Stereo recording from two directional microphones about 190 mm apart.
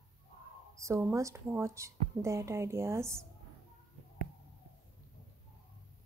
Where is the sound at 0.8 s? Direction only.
15° right (ahead or behind).